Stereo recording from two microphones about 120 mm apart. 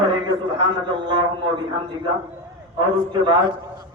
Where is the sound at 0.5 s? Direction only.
45° right (ahead or behind).